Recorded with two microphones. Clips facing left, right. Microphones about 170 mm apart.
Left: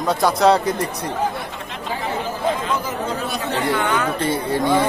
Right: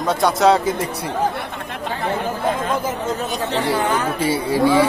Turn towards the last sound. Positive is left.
turn(degrees=-10)  # may be behind; listen again after turning